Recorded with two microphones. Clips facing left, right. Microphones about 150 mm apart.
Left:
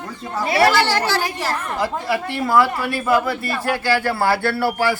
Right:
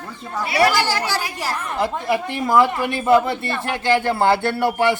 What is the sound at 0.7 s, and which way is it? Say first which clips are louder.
A man's voice: left 3 dB; 10° right (ahead or behind).